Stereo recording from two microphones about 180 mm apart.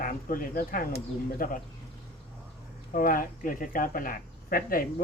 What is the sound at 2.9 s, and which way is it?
Speech, 50° left (ahead or behind).